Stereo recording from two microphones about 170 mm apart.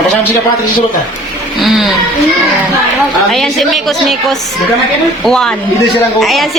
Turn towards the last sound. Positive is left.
turn(degrees=0)  # may be behind; listen again after turning